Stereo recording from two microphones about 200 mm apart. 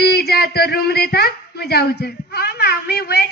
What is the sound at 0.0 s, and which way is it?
Speech, 55° left (ahead or behind).